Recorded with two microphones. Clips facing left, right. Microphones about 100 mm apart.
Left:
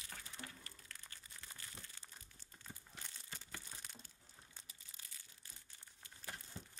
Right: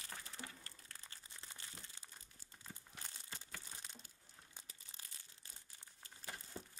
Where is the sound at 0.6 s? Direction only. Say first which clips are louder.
Even; 30° right (ahead or behind).